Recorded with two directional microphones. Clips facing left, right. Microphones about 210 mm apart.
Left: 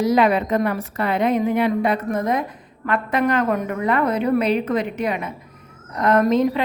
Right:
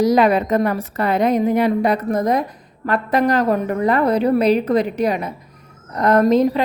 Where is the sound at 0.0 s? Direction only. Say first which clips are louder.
Right 3 dB; 40° right (ahead or behind).